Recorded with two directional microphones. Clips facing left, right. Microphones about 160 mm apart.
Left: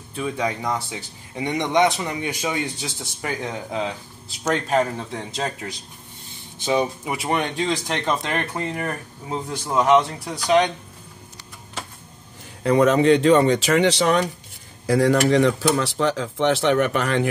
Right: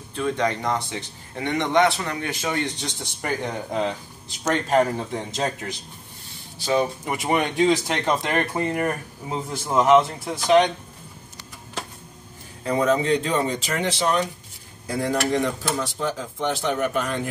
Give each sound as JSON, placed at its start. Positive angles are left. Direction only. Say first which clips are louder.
{"t": 0.1, "sound": "speech", "louder": "right 1 dB", "side_deg": 5}
{"t": 6.6, "sound": "speech", "louder": "left 1 dB", "side_deg": 15}
{"t": 7.1, "sound": "speech", "louder": "right 1 dB", "side_deg": 0}
{"t": 12.6, "sound": "speech", "louder": "left 5 dB", "side_deg": 80}
{"t": 14.9, "sound": "speech", "louder": "left 6 dB", "side_deg": 85}